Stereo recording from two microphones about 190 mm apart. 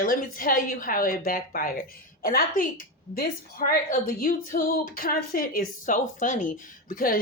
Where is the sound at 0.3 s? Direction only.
45° left (ahead or behind).